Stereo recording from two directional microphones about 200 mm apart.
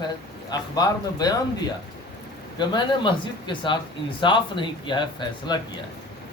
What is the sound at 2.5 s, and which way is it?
Speech, 20° left (ahead or behind).